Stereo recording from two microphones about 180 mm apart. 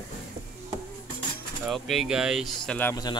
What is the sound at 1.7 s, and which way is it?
Speech, centre (ahead or behind).